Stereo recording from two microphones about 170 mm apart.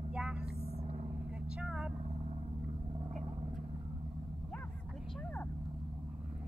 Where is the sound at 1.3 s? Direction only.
5° right (ahead or behind).